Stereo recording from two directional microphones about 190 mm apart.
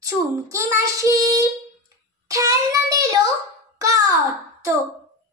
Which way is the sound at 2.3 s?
15° right (ahead or behind).